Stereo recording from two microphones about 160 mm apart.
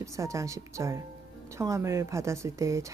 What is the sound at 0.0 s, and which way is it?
Speech, 20° right (ahead or behind).